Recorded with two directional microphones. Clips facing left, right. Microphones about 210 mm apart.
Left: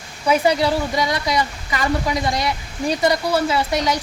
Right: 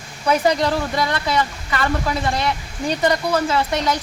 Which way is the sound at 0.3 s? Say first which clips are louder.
Left 1 dB; 10° left (ahead or behind).